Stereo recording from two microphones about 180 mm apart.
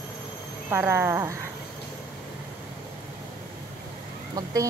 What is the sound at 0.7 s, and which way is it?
Speech, 15° right (ahead or behind).